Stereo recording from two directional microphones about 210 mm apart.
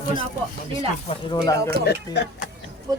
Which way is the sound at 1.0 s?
20° left (ahead or behind).